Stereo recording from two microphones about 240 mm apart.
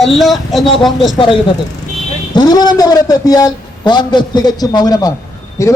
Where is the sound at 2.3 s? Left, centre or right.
Centre.